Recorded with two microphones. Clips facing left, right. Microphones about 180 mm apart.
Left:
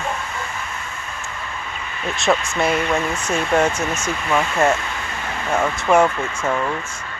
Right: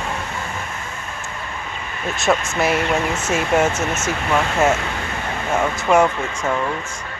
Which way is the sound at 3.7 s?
20° right (ahead or behind).